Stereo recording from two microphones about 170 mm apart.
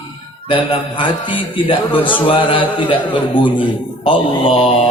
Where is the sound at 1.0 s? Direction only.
30° left (ahead or behind).